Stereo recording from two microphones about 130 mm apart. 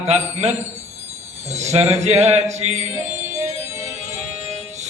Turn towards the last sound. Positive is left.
turn(degrees=-60)  # may be behind; listen again after turning